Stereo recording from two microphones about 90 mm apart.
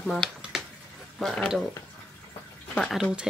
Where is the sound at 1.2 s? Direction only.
10° left (ahead or behind).